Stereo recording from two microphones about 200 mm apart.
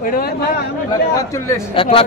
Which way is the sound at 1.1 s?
15° left (ahead or behind).